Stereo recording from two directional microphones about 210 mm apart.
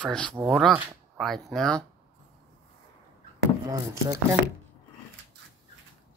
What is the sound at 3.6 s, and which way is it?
Speech, 15° right (ahead or behind).